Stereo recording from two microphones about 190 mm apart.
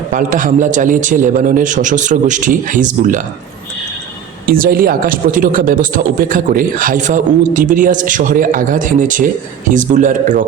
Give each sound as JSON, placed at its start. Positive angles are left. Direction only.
{"t": 0.1, "sound": "speech", "side_deg": -45}
{"t": 4.4, "sound": "speech", "side_deg": -50}